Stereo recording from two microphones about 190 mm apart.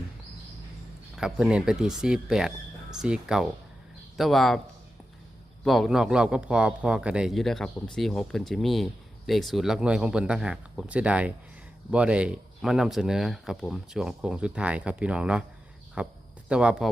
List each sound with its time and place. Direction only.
1.1 s a man's voice: 5° right (ahead or behind)
5.6 s a man's voice: centre (ahead or behind)